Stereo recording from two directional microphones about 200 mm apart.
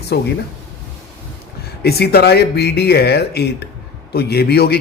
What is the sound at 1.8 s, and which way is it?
A man's voice, 55° left (ahead or behind).